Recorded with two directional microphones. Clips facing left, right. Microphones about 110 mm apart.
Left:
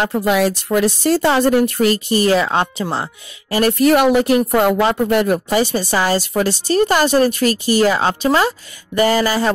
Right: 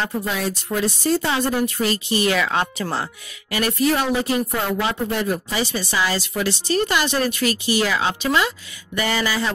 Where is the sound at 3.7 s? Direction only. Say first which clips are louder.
Left 7 dB; 60° left (ahead or behind).